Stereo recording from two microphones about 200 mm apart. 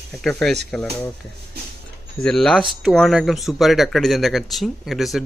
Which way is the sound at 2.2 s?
5° left (ahead or behind).